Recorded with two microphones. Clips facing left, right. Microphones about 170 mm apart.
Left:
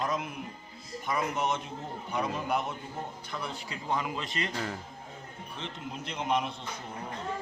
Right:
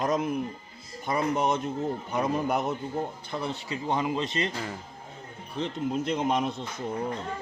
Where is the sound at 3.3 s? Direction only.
25° right (ahead or behind).